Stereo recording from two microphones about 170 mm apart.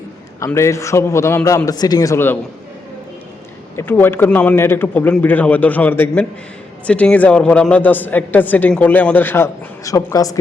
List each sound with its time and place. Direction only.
0.3 s a man's voice: 15° left (ahead or behind)
3.8 s a man's voice: 10° left (ahead or behind)